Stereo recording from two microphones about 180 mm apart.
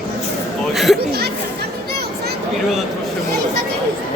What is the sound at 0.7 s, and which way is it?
Chatter, centre (ahead or behind).